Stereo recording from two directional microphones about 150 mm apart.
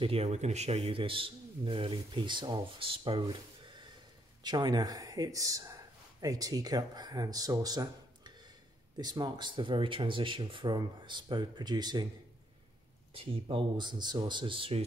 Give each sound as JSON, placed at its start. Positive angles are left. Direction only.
{"t": 0.0, "sound": "a man's voice", "side_deg": -40}
{"t": 4.4, "sound": "a man's voice", "side_deg": -30}
{"t": 13.1, "sound": "a man's voice", "side_deg": -35}